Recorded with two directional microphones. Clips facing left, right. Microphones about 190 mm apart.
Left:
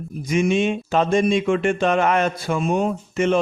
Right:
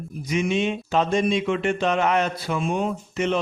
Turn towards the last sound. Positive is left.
turn(degrees=50)  # may be behind; listen again after turning